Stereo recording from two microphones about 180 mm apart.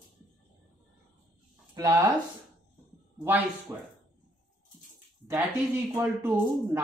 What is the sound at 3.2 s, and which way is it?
Speech, 10° right (ahead or behind).